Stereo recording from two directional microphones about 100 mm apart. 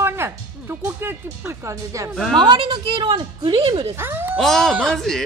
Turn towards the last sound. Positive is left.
turn(degrees=5)  # may be behind; listen again after turning